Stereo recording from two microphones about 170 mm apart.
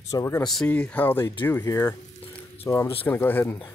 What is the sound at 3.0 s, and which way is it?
Speech, 10° left (ahead or behind).